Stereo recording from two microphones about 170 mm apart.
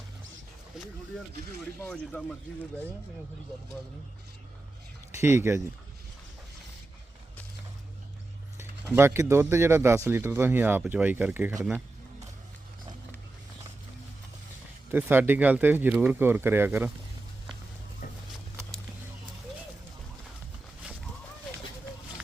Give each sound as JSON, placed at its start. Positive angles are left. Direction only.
{"t": 5.1, "sound": "speech", "side_deg": -15}
{"t": 8.5, "sound": "speech", "side_deg": -15}
{"t": 14.8, "sound": "speech", "side_deg": -10}
{"t": 18.0, "sound": "a sound", "side_deg": 50}